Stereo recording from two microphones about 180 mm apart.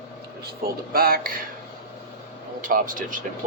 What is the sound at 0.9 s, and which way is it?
Speech, 55° right (ahead or behind).